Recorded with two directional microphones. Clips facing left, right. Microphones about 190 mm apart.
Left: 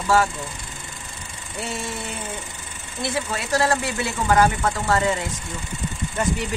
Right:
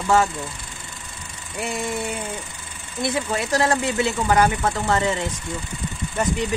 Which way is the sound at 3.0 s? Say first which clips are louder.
Right 3 dB; 20° right (ahead or behind).